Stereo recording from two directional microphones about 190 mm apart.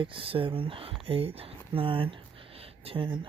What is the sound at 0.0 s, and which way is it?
Speech, 30° right (ahead or behind).